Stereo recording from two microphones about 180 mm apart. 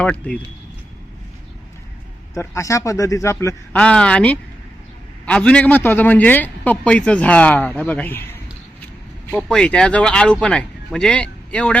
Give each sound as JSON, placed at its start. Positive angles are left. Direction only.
{"t": 0.0, "sound": "a man's voice", "side_deg": 5}
{"t": 2.3, "sound": "a man's voice", "side_deg": 15}